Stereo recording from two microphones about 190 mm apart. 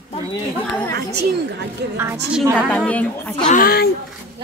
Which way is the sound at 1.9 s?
15° right (ahead or behind).